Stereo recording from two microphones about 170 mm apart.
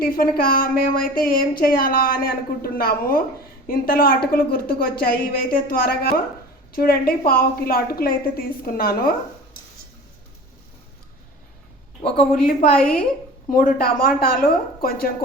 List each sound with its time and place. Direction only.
0.0 s speech: 60° left (ahead or behind)
12.7 s a woman's voice: 5° left (ahead or behind)
13.5 s speech: 55° left (ahead or behind)